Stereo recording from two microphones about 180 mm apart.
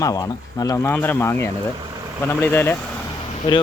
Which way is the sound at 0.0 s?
20° left (ahead or behind).